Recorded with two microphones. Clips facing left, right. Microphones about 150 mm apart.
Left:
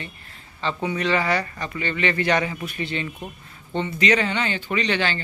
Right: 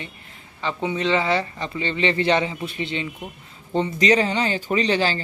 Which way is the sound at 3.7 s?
35° right (ahead or behind).